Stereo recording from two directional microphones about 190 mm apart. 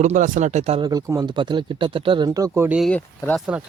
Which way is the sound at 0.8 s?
20° right (ahead or behind).